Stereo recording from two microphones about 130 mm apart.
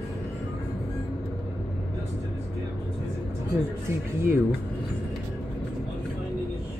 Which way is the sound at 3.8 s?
20° right (ahead or behind).